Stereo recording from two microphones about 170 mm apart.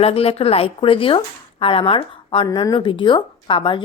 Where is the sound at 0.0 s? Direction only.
35° left (ahead or behind).